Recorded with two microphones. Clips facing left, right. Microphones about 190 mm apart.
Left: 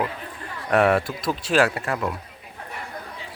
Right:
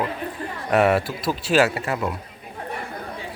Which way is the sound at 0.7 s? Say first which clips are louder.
Even; 5° right (ahead or behind).